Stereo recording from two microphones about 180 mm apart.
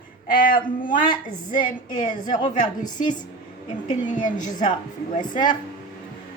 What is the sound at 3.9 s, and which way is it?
A woman's voice, 45° left (ahead or behind).